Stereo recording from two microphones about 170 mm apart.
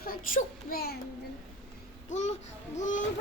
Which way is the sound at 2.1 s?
45° left (ahead or behind).